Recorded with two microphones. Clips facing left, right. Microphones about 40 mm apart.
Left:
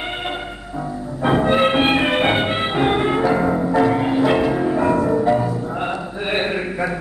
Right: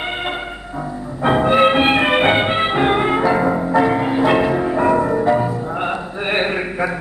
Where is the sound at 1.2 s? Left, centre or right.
Right.